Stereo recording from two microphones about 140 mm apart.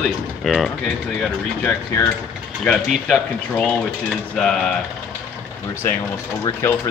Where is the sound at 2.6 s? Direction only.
Centre (ahead or behind).